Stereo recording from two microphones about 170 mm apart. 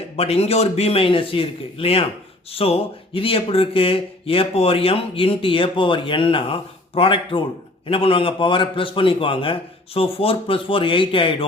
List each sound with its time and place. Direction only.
0.2 s speech: 35° left (ahead or behind)